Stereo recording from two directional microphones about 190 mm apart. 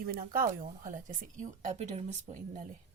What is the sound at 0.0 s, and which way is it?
Speech, 50° right (ahead or behind).